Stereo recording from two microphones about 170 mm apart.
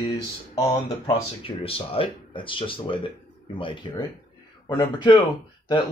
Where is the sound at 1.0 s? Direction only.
35° left (ahead or behind).